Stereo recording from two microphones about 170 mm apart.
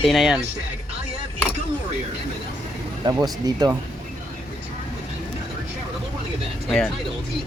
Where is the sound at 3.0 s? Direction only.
25° right (ahead or behind).